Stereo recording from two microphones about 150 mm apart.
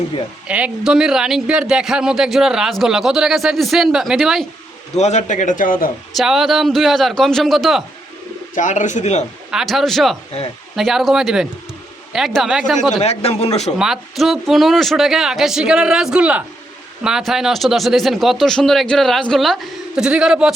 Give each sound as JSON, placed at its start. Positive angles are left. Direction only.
{"t": 0.4, "sound": "a man's voice", "side_deg": -10}
{"t": 4.9, "sound": "a man's voice", "side_deg": 50}
{"t": 6.1, "sound": "a man's voice", "side_deg": 0}
{"t": 8.5, "sound": "a man's voice", "side_deg": 55}
{"t": 9.5, "sound": "a man's voice", "side_deg": 0}
{"t": 13.0, "sound": "a man's voice", "side_deg": 45}
{"t": 13.7, "sound": "a man's voice", "side_deg": -5}